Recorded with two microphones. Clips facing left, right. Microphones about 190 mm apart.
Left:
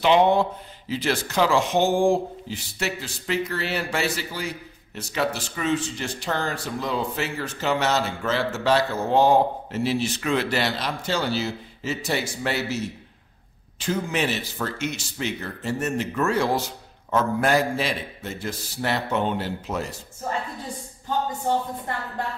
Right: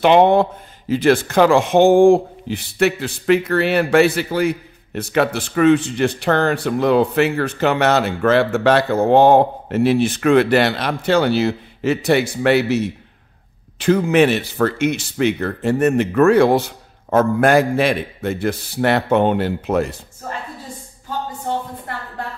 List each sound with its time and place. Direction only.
0.0 s speech: 55° right (ahead or behind)